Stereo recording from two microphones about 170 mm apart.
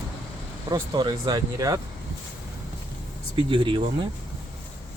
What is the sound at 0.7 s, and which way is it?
Speech, 25° right (ahead or behind).